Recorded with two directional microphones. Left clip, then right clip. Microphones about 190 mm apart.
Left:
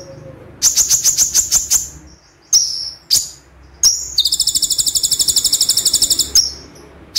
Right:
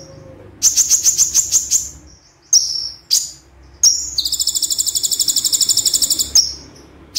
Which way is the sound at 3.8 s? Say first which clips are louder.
Left 1 dB; 20° left (ahead or behind).